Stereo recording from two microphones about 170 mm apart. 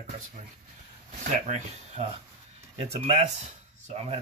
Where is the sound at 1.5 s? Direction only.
40° right (ahead or behind).